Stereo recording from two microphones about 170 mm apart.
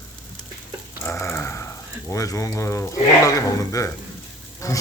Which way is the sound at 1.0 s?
15° left (ahead or behind).